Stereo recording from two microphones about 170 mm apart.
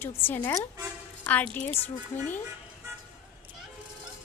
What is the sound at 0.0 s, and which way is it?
A woman's voice, 10° left (ahead or behind).